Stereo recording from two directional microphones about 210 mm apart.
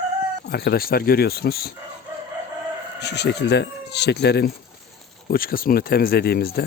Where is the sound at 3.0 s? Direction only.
55° left (ahead or behind).